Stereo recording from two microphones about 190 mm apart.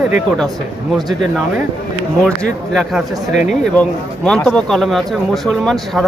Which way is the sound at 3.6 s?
5° left (ahead or behind).